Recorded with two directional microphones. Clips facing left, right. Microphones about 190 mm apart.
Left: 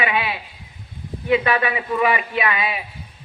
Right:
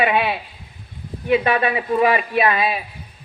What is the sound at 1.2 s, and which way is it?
Speech, 25° right (ahead or behind).